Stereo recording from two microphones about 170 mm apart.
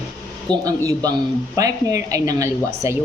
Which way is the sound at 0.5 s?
5° left (ahead or behind).